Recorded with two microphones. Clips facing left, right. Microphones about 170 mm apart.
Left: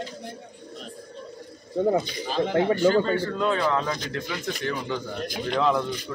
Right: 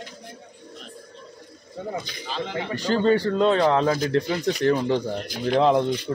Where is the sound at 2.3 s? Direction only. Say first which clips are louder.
Left 7 dB; 50° left (ahead or behind).